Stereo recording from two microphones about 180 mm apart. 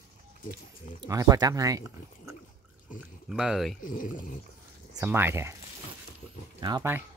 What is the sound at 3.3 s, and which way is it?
Speech, 5° right (ahead or behind).